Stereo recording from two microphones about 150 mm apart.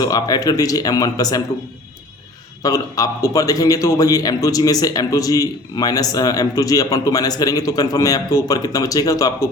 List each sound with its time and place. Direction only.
0.0 s a man's voice: 25° left (ahead or behind)
2.6 s a man's voice: 25° left (ahead or behind)